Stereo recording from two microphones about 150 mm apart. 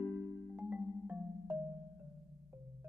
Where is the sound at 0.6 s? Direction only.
10° right (ahead or behind).